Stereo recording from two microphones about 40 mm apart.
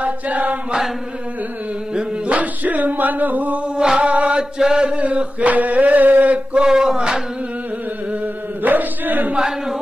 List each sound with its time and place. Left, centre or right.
0.0 s chant: right
2.2 s music: right
3.6 s music: right
4.1 s chant: right
4.4 s chant: centre
4.8 s a sound: right
6.5 s a sound: centre
8.6 s chant: right